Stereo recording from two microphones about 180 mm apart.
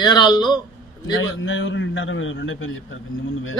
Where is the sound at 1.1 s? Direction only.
90° left.